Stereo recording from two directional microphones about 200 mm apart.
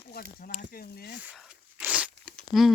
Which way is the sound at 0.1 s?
50° left (ahead or behind).